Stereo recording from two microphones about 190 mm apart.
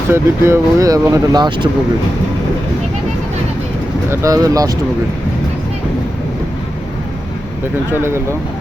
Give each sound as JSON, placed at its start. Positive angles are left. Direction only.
{"t": 0.1, "sound": "speech", "side_deg": -15}
{"t": 4.1, "sound": "speech", "side_deg": -15}
{"t": 7.9, "sound": "speech", "side_deg": -15}